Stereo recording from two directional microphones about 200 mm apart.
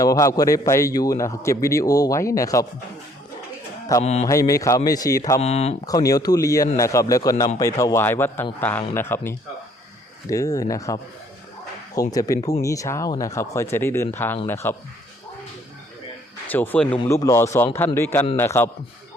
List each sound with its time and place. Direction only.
0.0 s a man's voice: 15° left (ahead or behind)
4.0 s speech: 35° left (ahead or behind)
4.3 s a man's voice: 15° left (ahead or behind)
5.4 s speech: 30° left (ahead or behind)
5.8 s a man's voice: 20° left (ahead or behind)
12.1 s a man's voice: 15° left (ahead or behind)
16.5 s a man's voice: 10° left (ahead or behind)
17.0 s a man's voice: 15° left (ahead or behind)